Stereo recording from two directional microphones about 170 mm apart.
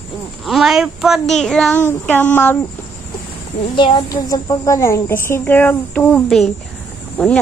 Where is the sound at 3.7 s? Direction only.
25° left (ahead or behind); by 6.5 s centre (ahead or behind).